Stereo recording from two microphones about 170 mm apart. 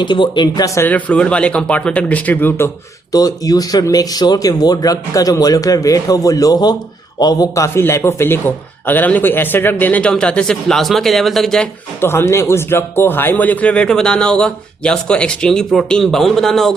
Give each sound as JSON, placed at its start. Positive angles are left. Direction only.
{"t": 0.0, "sound": "a man's voice", "side_deg": 25}
{"t": 11.9, "sound": "speech", "side_deg": 15}